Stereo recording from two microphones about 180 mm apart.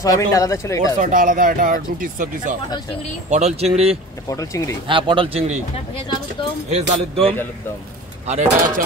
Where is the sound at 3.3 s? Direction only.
40° right (ahead or behind).